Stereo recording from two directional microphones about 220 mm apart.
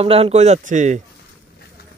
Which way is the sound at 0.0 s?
25° right (ahead or behind).